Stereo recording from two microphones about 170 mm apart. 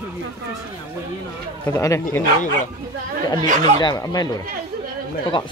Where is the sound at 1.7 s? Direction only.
15° left (ahead or behind).